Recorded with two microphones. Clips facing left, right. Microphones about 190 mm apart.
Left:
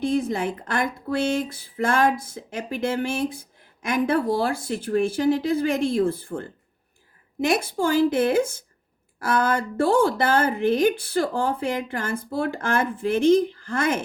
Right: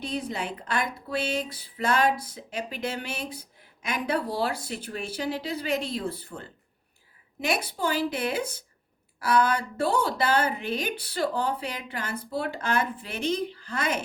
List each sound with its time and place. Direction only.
0.0 s speech: 50° left (ahead or behind)